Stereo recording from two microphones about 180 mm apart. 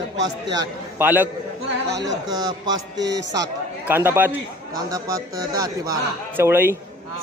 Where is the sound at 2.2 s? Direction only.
20° right (ahead or behind).